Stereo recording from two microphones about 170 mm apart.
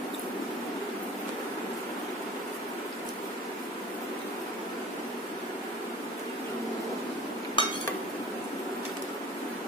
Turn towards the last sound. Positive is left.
turn(degrees=30)  # may be behind; listen again after turning